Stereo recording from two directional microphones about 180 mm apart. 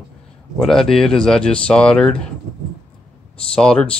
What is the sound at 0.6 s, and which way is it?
Speech, centre (ahead or behind).